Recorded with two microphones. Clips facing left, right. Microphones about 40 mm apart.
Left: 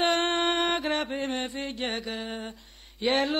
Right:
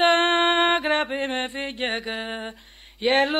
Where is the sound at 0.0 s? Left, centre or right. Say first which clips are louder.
Right 6 dB; right.